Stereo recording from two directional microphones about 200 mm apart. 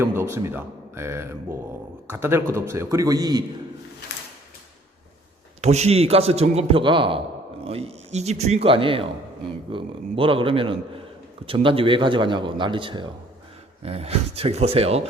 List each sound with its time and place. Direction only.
0.0 s speech: 10° right (ahead or behind)
5.6 s a man's voice: 30° right (ahead or behind)